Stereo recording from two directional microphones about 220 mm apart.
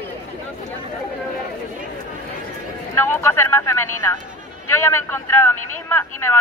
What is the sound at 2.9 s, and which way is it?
Speech, 10° left (ahead or behind).